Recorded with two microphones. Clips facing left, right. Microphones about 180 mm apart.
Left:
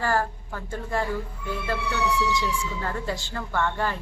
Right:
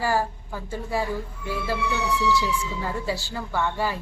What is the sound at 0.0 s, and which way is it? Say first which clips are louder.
A woman's voice: right 1 dB; 10° right (ahead or behind).